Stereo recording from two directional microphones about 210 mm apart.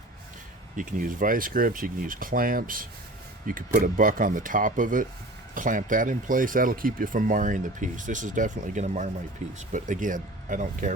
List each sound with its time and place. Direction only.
0.8 s speech: 40° right (ahead or behind)